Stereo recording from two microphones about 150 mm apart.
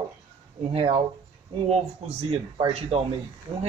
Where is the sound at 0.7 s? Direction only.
45° right (ahead or behind).